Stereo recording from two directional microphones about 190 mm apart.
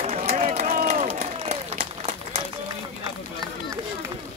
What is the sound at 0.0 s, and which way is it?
Run, 35° right (ahead or behind).